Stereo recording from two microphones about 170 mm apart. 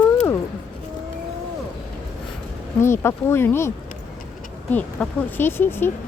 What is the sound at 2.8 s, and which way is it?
Speech, 15° left (ahead or behind).